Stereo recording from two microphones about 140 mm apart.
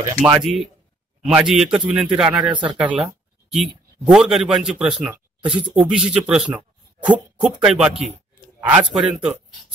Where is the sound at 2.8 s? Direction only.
10° right (ahead or behind).